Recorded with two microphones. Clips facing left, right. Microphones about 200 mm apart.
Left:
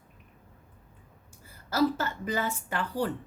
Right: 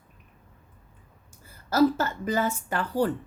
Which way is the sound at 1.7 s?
45° right (ahead or behind).